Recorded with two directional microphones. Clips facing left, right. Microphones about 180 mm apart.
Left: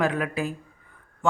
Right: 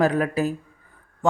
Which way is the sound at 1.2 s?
35° right (ahead or behind).